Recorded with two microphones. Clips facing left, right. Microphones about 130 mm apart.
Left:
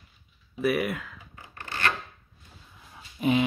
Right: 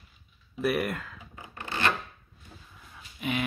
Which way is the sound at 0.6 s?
Centre (ahead or behind).